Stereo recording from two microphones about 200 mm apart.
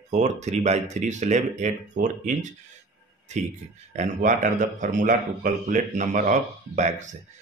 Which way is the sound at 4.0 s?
40° right (ahead or behind).